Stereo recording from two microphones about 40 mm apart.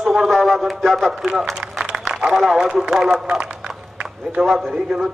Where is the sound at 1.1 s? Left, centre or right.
Centre.